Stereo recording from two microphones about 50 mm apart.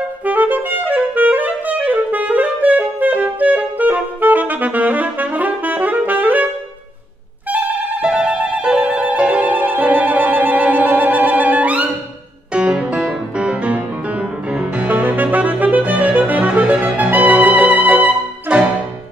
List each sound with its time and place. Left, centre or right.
0.2 s clarinet: right
8.0 s music: right
14.8 s music: right